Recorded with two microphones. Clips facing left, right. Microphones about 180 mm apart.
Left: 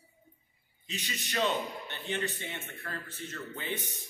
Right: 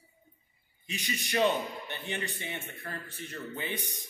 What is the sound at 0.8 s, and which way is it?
A man's voice, 10° right (ahead or behind).